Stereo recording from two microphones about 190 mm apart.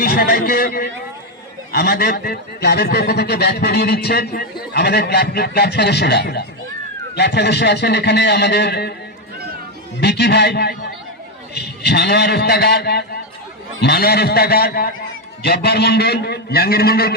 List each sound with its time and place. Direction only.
0.0 s a man's voice: 55° left (ahead or behind)
10.0 s a man's voice: 60° left (ahead or behind)